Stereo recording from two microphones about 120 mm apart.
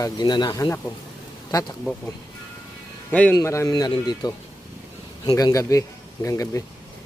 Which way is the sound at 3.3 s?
25° left (ahead or behind).